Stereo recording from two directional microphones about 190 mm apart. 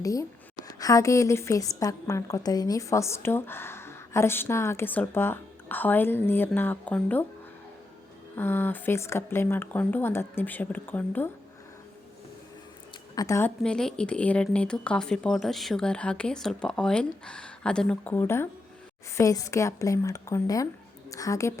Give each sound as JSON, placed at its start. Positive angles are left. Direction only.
{"t": 0.0, "sound": "a woman's voice", "side_deg": 15}
{"t": 8.4, "sound": "a woman's voice", "side_deg": 10}
{"t": 13.1, "sound": "a woman's voice", "side_deg": 15}
{"t": 13.6, "sound": "a woman's voice", "side_deg": 5}